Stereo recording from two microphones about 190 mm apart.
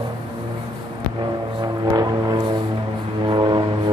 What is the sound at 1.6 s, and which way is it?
Music, 20° right (ahead or behind).